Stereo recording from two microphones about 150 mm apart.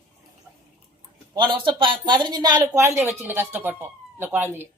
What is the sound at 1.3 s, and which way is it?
Speech, 30° right (ahead or behind).